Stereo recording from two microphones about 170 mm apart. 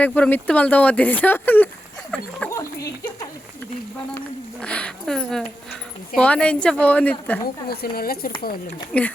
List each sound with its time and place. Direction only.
0.0 s speech: 10° left (ahead or behind)
4.6 s speech: 5° left (ahead or behind)
7.4 s speech: 65° left (ahead or behind)
8.9 s speech: 10° left (ahead or behind)